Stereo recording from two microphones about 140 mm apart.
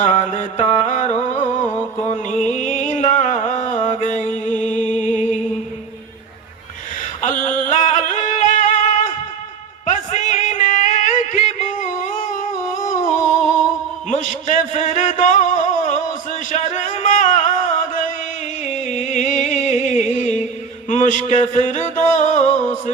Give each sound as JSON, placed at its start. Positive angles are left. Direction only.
{"t": 0.0, "sound": "music", "side_deg": 60}
{"t": 7.2, "sound": "music", "side_deg": 65}
{"t": 14.2, "sound": "a sound", "side_deg": 65}
{"t": 16.5, "sound": "music", "side_deg": 60}